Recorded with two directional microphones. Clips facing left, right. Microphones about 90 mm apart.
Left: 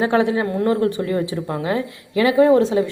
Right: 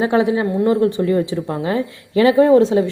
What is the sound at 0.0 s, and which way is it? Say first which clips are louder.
Speech: right 2 dB; 20° right (ahead or behind).